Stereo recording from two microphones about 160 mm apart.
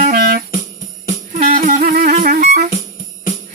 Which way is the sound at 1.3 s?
55° right (ahead or behind).